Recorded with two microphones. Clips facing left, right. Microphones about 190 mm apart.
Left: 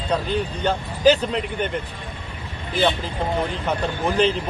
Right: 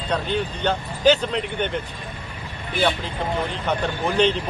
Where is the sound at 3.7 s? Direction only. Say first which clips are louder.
Right 1 dB; centre (ahead or behind).